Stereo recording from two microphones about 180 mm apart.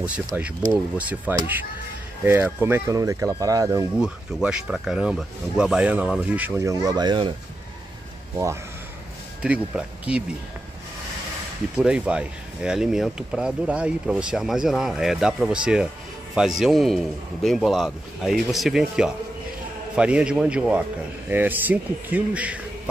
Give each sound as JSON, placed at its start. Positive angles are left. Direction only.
{"t": 0.3, "sound": "speech", "side_deg": -10}
{"t": 4.0, "sound": "speech", "side_deg": -5}
{"t": 9.4, "sound": "speech", "side_deg": -5}
{"t": 11.7, "sound": "speech", "side_deg": -5}